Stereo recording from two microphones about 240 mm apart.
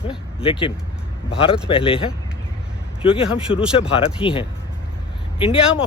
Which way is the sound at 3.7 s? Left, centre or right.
Left.